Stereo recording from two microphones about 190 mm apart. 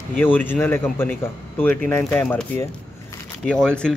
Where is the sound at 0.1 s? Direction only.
10° left (ahead or behind).